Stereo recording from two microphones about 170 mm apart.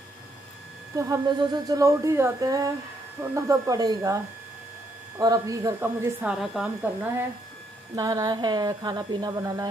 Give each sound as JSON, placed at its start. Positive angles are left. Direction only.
{"t": 0.9, "sound": "speech", "side_deg": -20}
{"t": 5.2, "sound": "speech", "side_deg": -25}
{"t": 6.2, "sound": "speech", "side_deg": -5}
{"t": 7.9, "sound": "speech", "side_deg": -20}